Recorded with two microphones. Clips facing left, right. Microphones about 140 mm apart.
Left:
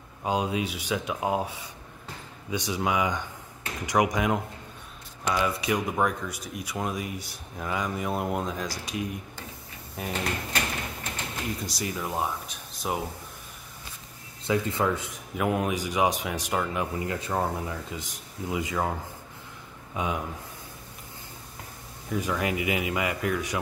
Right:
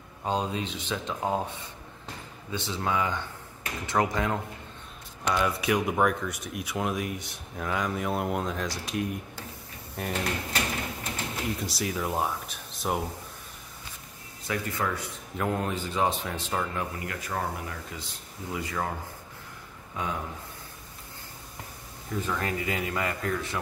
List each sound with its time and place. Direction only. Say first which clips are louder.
0.2 s speech: left 2 dB; 10° left (ahead or behind)
5.3 s speech: even; centre (ahead or behind)
14.4 s speech: left 5 dB; 25° left (ahead or behind)
15.3 s speech: left 3 dB; 10° left (ahead or behind)
20.0 s speech: left 3 dB; 20° left (ahead or behind)
22.1 s speech: left 3 dB; 10° left (ahead or behind)